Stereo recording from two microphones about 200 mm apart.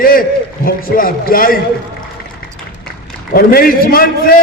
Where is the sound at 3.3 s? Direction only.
45° left (ahead or behind).